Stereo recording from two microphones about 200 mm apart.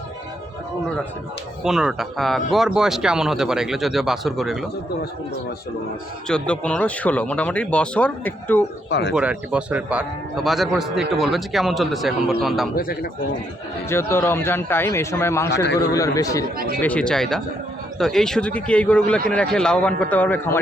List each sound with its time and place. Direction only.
1.6 s a man's voice: centre (ahead or behind)
6.2 s speech: 5° left (ahead or behind)
8.9 s speech: 60° left (ahead or behind)
9.1 s a man's voice: 5° right (ahead or behind)
12.7 s speech: 50° left (ahead or behind)
13.9 s speech: 10° left (ahead or behind)
16.8 s a man's voice: 5° left (ahead or behind)